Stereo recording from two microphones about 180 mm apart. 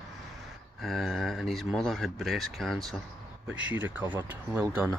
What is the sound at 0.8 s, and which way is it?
Speech, centre (ahead or behind).